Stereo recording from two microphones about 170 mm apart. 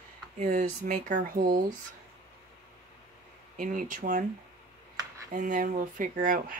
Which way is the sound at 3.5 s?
50° right (ahead or behind).